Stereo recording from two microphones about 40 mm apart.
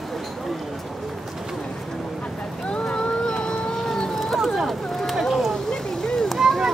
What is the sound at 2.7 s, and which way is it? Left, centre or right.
Boat, left.